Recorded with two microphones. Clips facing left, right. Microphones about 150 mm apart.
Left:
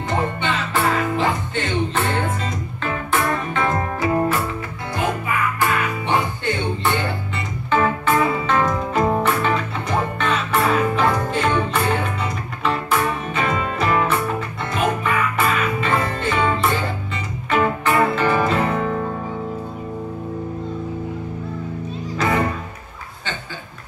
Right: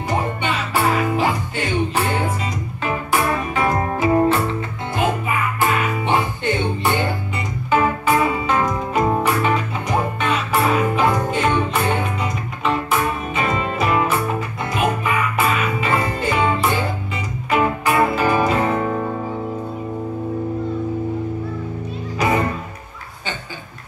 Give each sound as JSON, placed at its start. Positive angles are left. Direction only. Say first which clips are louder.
{"t": 1.1, "sound": "music", "louder": "right 1 dB", "side_deg": -10}
{"t": 3.8, "sound": "music", "louder": "right 3 dB", "side_deg": -25}
{"t": 7.7, "sound": "music", "louder": "right 1 dB", "side_deg": -10}